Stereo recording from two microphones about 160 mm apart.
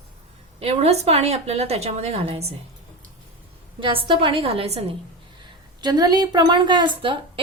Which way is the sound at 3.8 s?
30° right (ahead or behind).